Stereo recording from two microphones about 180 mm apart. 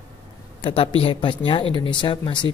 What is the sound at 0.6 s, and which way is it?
Speech, 30° left (ahead or behind).